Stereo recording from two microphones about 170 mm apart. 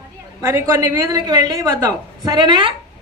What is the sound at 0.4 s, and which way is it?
A man's voice, 15° right (ahead or behind).